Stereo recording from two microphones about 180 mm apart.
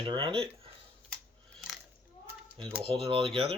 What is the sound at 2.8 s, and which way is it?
Speech, 30° right (ahead or behind).